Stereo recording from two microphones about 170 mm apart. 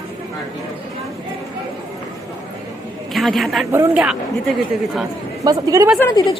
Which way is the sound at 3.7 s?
10° right (ahead or behind).